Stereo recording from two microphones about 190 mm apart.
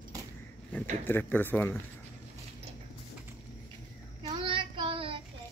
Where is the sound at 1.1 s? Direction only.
10° left (ahead or behind).